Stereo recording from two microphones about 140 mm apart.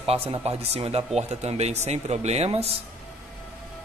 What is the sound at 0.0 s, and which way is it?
Speech, 45° right (ahead or behind).